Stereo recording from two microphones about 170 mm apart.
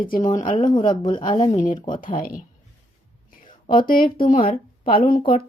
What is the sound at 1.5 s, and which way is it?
Speech, 45° left (ahead or behind).